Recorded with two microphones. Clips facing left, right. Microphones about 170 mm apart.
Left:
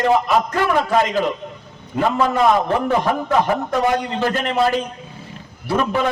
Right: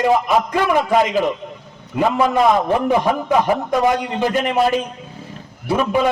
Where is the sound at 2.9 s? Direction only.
15° right (ahead or behind).